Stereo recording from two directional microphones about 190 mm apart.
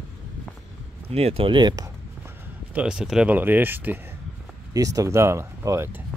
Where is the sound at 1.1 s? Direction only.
30° right (ahead or behind).